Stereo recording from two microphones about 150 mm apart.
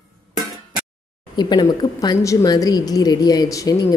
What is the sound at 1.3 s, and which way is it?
Speech, 30° left (ahead or behind).